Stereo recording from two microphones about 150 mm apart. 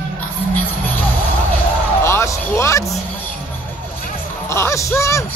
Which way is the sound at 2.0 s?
20° left (ahead or behind).